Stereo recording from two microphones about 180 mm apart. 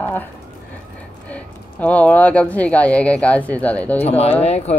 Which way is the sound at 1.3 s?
10° left (ahead or behind).